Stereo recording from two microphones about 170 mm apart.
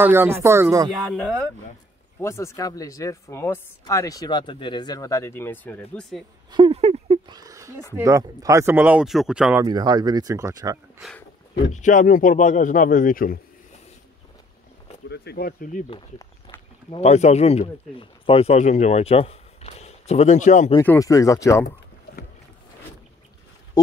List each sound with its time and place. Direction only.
0.0 s speech: 15° right (ahead or behind)
2.1 s speech: 15° left (ahead or behind)
6.5 s a sound: 30° right (ahead or behind)
7.3 s a sound: 20° right (ahead or behind)
7.9 s speech: 15° right (ahead or behind)
9.6 s speech: 25° right (ahead or behind)
11.7 s speech: 50° left (ahead or behind)
15.0 s speech: 80° left; by 15.8 s 55° left (ahead or behind)
16.9 s speech: 40° left (ahead or behind)
20.8 s speech: 15° left (ahead or behind)